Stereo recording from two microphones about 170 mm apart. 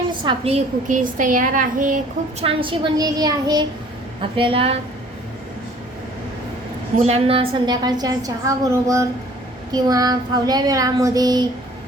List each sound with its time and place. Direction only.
0.1 s a woman's voice: 30° right (ahead or behind); by 2.0 s 50° right (ahead or behind)
2.4 s a woman's voice: 30° right (ahead or behind)
7.0 s a woman's voice: 35° right (ahead or behind)
7.6 s speech: 25° right (ahead or behind)